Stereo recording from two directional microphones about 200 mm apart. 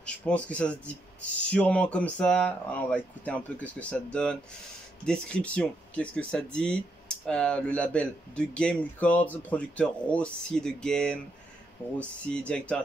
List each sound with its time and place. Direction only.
0.0 s speech: 5° left (ahead or behind)